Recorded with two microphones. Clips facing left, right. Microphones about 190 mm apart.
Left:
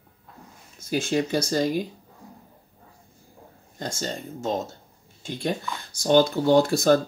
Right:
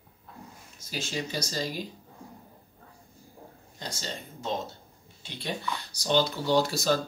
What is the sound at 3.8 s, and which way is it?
Speech, 50° left (ahead or behind).